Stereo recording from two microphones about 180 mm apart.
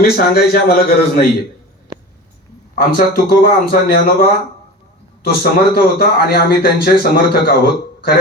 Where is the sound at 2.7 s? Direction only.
55° left (ahead or behind).